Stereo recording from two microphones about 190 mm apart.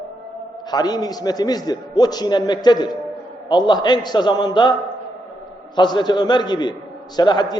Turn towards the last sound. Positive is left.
turn(degrees=20)  # may be behind; listen again after turning